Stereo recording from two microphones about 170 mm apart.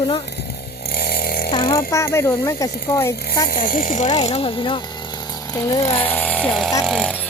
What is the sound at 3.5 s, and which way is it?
Speech, 55° left (ahead or behind).